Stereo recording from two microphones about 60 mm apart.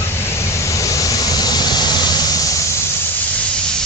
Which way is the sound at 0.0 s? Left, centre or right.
Left.